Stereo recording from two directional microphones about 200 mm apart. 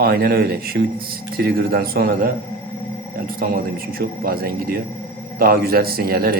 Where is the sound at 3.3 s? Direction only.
50° right (ahead or behind).